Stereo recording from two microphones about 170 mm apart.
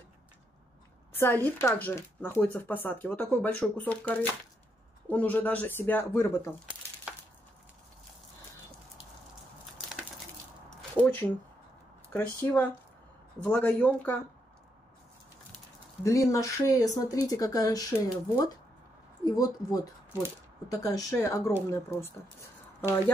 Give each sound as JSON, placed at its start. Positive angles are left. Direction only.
{"t": 1.1, "sound": "speech", "side_deg": 10}
{"t": 10.7, "sound": "a sound", "side_deg": 10}
{"t": 12.1, "sound": "speech", "side_deg": 10}
{"t": 16.0, "sound": "speech", "side_deg": 15}